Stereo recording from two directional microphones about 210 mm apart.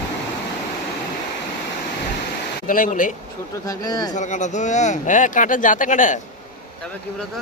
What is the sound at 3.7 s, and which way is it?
Speech, 20° left (ahead or behind).